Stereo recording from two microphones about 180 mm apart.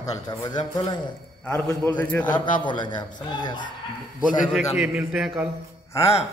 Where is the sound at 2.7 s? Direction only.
25° left (ahead or behind).